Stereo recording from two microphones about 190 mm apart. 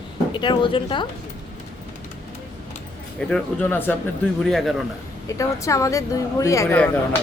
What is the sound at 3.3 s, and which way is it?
A man's voice, 10° left (ahead or behind).